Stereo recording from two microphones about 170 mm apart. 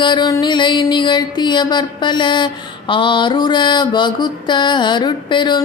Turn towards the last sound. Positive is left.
turn(degrees=25)  # may be behind; listen again after turning